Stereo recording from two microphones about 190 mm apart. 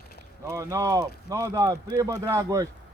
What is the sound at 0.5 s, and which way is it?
Speech, 15° right (ahead or behind).